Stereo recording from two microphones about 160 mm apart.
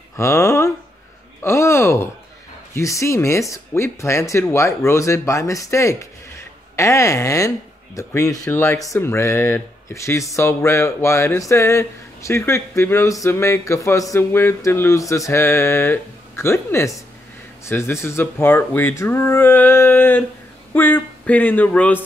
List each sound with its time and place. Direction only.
0.2 s speech: 20° left (ahead or behind)
1.4 s a sound: 15° left (ahead or behind)
2.7 s speech: 20° left (ahead or behind)